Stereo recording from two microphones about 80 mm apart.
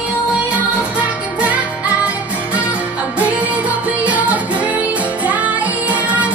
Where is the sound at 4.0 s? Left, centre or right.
Centre.